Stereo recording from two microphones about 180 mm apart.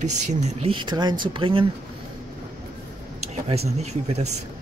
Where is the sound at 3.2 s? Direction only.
35° right (ahead or behind).